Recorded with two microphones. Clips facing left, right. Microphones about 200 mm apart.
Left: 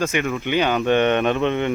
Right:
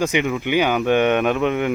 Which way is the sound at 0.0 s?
15° right (ahead or behind).